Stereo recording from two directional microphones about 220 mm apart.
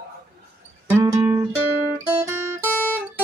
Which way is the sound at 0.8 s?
10° right (ahead or behind).